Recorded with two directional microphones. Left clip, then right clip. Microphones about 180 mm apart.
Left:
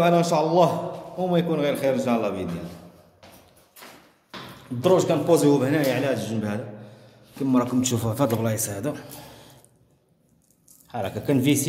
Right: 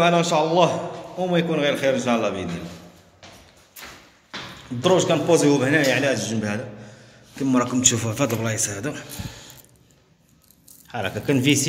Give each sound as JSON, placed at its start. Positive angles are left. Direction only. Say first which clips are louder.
{"t": 0.0, "sound": "a man's voice", "louder": "right 1 dB", "side_deg": 15}
{"t": 4.8, "sound": "a man's voice", "louder": "right 1 dB", "side_deg": 5}
{"t": 10.9, "sound": "a man's voice", "louder": "right 2 dB", "side_deg": 10}